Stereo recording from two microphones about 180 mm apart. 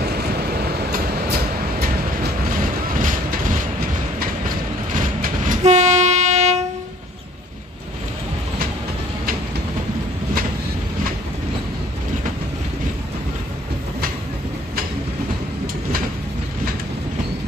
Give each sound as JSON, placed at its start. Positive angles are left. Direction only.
{"t": 0.8, "sound": "train", "side_deg": -55}
{"t": 3.0, "sound": "vehicle", "side_deg": -50}
{"t": 4.9, "sound": "train", "side_deg": -45}